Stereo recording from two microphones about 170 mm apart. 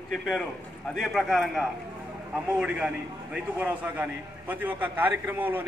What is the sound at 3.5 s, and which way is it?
A man's voice, 10° right (ahead or behind).